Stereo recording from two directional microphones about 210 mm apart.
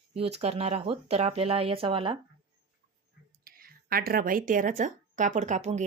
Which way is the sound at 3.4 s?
45° right (ahead or behind).